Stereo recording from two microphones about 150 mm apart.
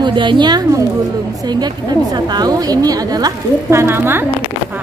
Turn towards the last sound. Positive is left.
turn(degrees=-15)  # may be behind; listen again after turning